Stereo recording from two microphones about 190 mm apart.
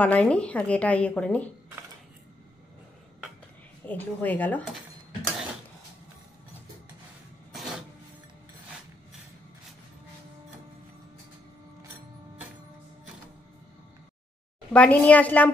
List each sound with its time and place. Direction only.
0.0 s a woman's voice: 5° left (ahead or behind)
3.8 s a woman's voice: 10° left (ahead or behind)
14.7 s a woman's voice: 5° left (ahead or behind)